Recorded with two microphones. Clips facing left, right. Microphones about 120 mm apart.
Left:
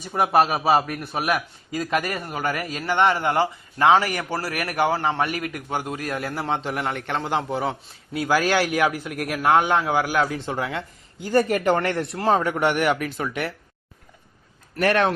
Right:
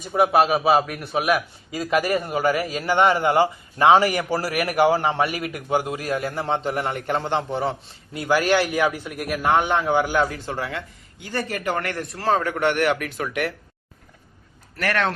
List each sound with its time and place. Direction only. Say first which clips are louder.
0.1 s a man's voice: right 2 dB; centre (ahead or behind)
6.1 s a man's voice: right 1 dB; centre (ahead or behind)
10.3 s speech: left 2 dB; 20° left (ahead or behind)
11.2 s speech: left 8 dB; 45° left (ahead or behind)
11.6 s speech: left 5 dB; 30° left (ahead or behind); by 13.5 s centre (ahead or behind)
14.8 s speech: left 4 dB; 25° left (ahead or behind)